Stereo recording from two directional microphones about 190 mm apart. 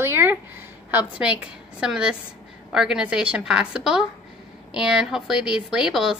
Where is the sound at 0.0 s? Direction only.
10° right (ahead or behind).